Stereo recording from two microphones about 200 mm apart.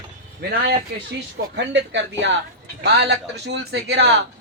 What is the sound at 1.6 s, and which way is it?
Speech, 65° right (ahead or behind).